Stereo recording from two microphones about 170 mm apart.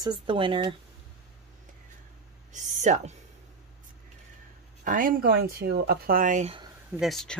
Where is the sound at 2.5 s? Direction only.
45° right (ahead or behind).